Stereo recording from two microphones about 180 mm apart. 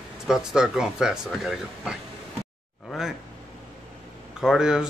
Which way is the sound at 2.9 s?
Centre (ahead or behind).